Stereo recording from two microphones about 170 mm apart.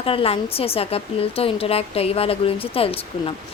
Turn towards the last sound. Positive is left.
turn(degrees=35)  # may be behind; listen again after turning